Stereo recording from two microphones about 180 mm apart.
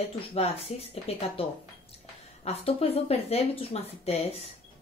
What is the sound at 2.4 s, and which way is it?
Speech, 35° left (ahead or behind).